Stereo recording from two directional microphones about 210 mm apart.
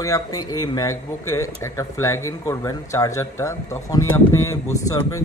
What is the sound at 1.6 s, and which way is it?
Speech, 15° left (ahead or behind).